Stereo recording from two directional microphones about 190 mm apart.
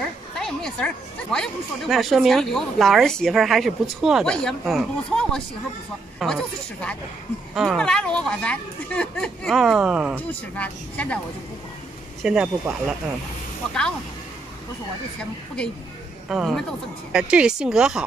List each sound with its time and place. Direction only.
0.4 s speech: centre (ahead or behind)
10.1 s speech: 10° left (ahead or behind)
12.2 s speech: 5° right (ahead or behind)
16.3 s speech: centre (ahead or behind)